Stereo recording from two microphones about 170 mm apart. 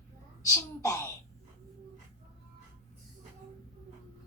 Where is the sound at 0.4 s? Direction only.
15° left (ahead or behind).